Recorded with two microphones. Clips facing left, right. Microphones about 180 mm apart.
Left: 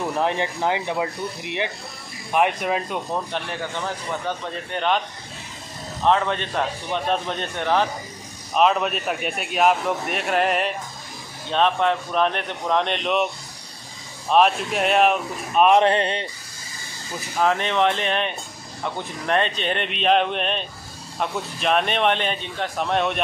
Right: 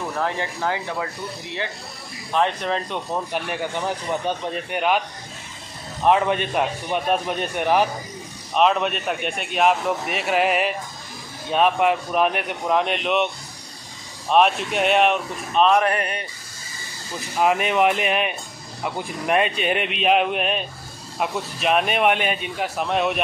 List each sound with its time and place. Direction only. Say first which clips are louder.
0.1 s speech: left 2 dB; 20° left (ahead or behind)
3.1 s a man's voice: right 1 dB; 10° right (ahead or behind)
6.0 s a man's voice: right 2 dB; 15° right (ahead or behind)
8.5 s a man's voice: even; centre (ahead or behind)
14.3 s a man's voice: even; centre (ahead or behind)
15.6 s speech: left 2 dB; 25° left (ahead or behind)
17.4 s a man's voice: right 1 dB; 10° right (ahead or behind)